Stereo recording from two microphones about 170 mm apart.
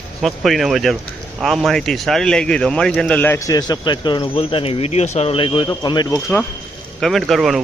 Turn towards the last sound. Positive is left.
turn(degrees=0)  # may be behind; listen again after turning